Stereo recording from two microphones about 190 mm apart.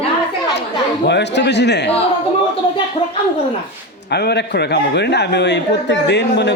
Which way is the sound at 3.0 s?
25° left (ahead or behind).